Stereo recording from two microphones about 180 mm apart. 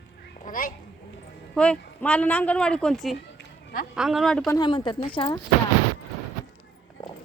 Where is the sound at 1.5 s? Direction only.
5° left (ahead or behind).